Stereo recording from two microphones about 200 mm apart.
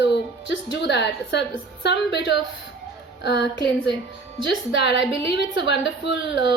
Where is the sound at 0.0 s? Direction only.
60° left (ahead or behind).